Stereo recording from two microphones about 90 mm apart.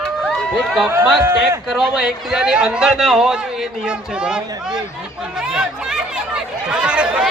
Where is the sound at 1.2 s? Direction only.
30° right (ahead or behind).